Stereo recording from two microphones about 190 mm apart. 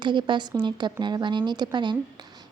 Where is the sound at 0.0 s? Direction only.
25° right (ahead or behind).